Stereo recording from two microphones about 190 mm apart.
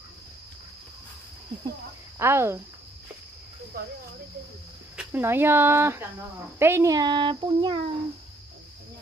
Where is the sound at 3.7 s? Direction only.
50° right (ahead or behind).